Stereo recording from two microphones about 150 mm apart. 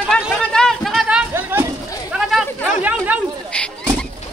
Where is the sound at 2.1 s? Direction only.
5° right (ahead or behind).